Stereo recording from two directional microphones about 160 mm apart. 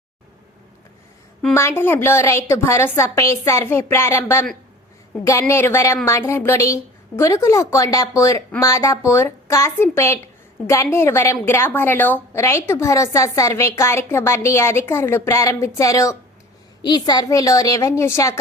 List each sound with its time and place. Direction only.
1.5 s a woman's voice: 15° left (ahead or behind)